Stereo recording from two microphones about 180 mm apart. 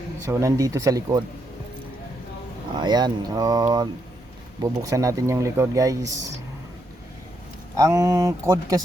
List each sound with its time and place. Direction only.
0.3 s speech: 15° right (ahead or behind)
2.7 s speech: 25° right (ahead or behind)
7.8 s speech: 20° right (ahead or behind)